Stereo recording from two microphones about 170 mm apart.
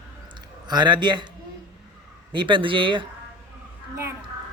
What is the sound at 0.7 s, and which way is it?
Speech, 25° right (ahead or behind).